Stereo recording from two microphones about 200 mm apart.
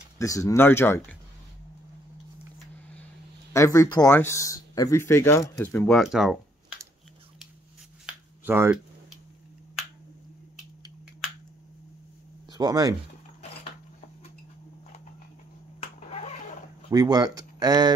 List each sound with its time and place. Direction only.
0.2 s speech: 15° left (ahead or behind)
3.5 s speech: 15° left (ahead or behind)
8.1 s a sound: 10° right (ahead or behind)
12.4 s speech: 20° right (ahead or behind)
15.8 s a sound: 30° left (ahead or behind)
16.9 s speech: 20° right (ahead or behind)